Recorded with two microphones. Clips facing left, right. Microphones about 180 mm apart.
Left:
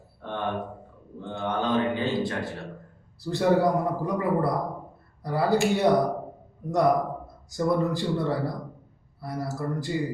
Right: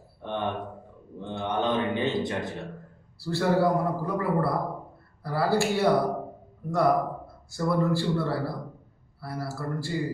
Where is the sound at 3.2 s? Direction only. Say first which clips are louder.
Even; 20° left (ahead or behind).